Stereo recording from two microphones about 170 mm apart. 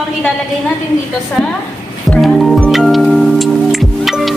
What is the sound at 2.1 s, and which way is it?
Music, centre (ahead or behind).